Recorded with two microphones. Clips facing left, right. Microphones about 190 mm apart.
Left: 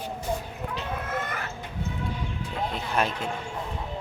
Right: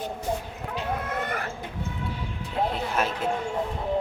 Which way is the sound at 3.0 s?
5° right (ahead or behind).